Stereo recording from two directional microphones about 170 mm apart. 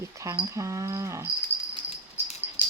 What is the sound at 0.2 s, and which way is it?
Speech, 20° right (ahead or behind).